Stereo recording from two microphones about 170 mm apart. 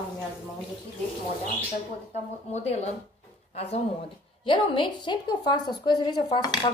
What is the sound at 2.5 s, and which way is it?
A woman's voice, 40° left (ahead or behind).